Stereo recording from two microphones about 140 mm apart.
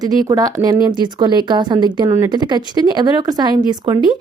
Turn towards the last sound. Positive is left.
turn(degrees=-30)  # may be behind; listen again after turning